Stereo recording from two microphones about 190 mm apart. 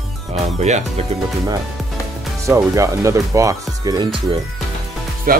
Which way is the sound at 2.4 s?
15° right (ahead or behind).